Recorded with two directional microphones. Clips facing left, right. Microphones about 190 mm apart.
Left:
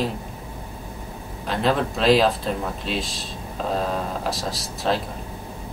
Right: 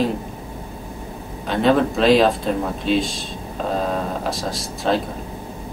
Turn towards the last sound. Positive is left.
turn(degrees=0)  # may be behind; listen again after turning